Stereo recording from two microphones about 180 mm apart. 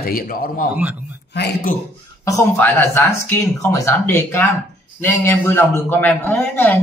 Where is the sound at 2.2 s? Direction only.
15° left (ahead or behind).